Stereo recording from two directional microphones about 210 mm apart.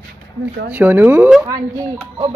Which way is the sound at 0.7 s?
10° right (ahead or behind).